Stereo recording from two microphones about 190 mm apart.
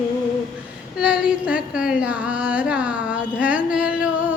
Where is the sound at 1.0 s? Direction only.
5° right (ahead or behind).